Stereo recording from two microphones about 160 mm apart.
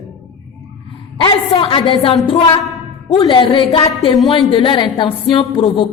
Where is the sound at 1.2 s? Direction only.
35° left (ahead or behind).